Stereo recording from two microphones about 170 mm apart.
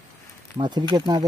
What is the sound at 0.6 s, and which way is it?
Speech, 25° right (ahead or behind).